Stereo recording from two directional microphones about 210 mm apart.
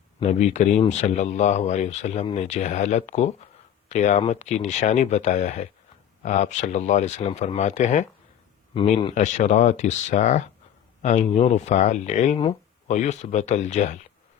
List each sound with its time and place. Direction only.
0.2 s speech: 35° left (ahead or behind)
9.1 s speech: 35° left (ahead or behind)